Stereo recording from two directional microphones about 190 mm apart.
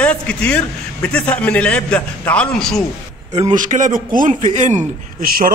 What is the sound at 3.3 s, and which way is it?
A man's voice, 35° right (ahead or behind).